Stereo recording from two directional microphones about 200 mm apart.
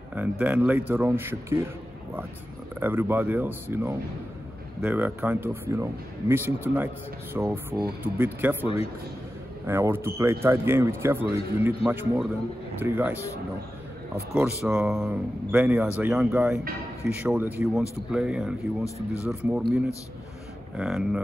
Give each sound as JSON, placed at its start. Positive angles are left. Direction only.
{"t": 0.1, "sound": "a man's voice", "side_deg": -10}
{"t": 2.8, "sound": "a man's voice", "side_deg": -10}
{"t": 8.6, "sound": "a man's voice", "side_deg": 30}
{"t": 9.7, "sound": "a man's voice", "side_deg": -10}
{"t": 14.3, "sound": "a man's voice", "side_deg": -5}
{"t": 20.7, "sound": "speech", "side_deg": -5}